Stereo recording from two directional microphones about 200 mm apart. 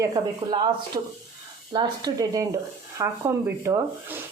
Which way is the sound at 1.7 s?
20° right (ahead or behind).